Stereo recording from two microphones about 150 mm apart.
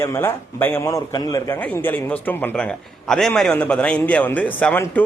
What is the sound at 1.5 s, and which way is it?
A man's voice, 10° left (ahead or behind).